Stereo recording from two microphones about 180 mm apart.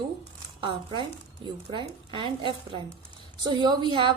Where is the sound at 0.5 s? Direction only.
25° right (ahead or behind).